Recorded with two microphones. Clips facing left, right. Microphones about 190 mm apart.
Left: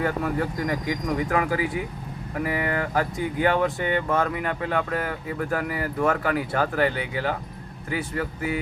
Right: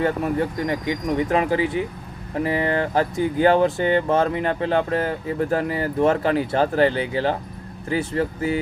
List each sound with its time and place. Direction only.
0.0 s speech: 25° right (ahead or behind)